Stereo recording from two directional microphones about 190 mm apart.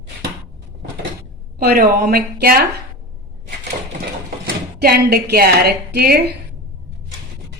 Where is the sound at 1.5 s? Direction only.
50° right (ahead or behind).